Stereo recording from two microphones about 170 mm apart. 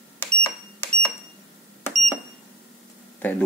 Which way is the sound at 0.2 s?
15° left (ahead or behind).